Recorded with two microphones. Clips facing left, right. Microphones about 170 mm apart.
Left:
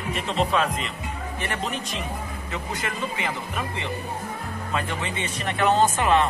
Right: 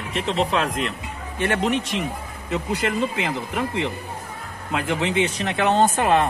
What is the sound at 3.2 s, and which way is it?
Speech, 90° right.